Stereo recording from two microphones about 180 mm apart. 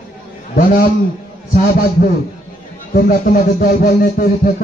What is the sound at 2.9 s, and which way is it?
Speech, 55° left (ahead or behind).